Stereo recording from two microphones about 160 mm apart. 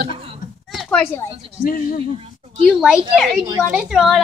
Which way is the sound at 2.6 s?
Centre (ahead or behind).